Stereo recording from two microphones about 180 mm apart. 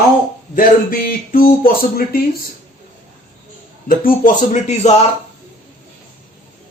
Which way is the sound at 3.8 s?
50° left (ahead or behind).